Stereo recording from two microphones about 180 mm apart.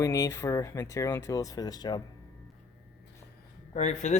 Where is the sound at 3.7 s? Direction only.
40° left (ahead or behind).